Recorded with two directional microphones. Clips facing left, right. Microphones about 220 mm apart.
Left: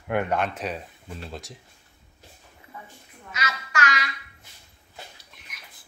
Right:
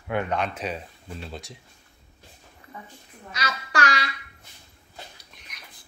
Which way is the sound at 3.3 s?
35° right (ahead or behind).